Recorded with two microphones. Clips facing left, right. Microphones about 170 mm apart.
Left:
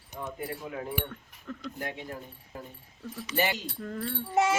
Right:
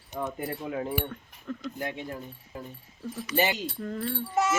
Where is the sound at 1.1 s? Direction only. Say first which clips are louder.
Right 4 dB; 5° right (ahead or behind).